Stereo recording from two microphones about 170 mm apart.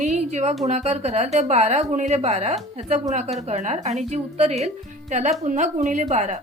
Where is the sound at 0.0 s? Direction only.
40° right (ahead or behind).